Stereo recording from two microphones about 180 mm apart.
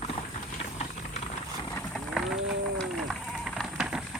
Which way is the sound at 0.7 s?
35° left (ahead or behind).